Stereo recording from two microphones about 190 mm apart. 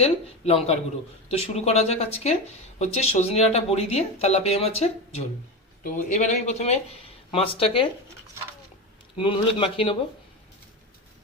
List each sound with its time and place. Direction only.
0.0 s speech: 35° left (ahead or behind)
9.1 s speech: 25° left (ahead or behind)